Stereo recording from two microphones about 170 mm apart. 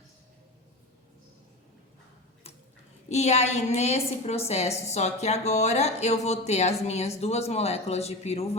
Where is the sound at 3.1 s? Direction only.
40° left (ahead or behind).